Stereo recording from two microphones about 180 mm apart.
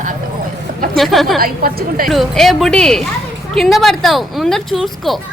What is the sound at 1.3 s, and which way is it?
Speech, 55° right (ahead or behind).